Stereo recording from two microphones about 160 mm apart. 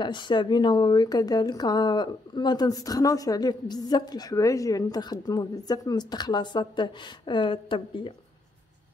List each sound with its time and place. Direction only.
0.0 s a woman's voice: 30° left (ahead or behind)